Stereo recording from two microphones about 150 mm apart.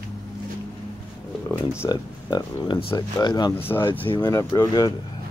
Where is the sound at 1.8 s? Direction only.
30° left (ahead or behind).